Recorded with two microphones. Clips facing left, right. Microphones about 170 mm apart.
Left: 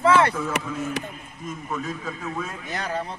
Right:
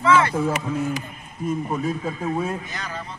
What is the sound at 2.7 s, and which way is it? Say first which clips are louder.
Speech: left 5 dB; 55° left (ahead or behind).